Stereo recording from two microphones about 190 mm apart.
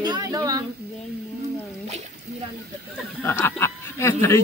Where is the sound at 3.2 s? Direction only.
10° left (ahead or behind).